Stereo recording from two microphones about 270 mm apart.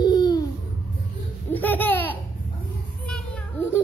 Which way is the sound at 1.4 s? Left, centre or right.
Centre.